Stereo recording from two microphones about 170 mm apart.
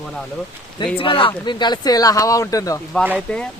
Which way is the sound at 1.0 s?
30° left (ahead or behind).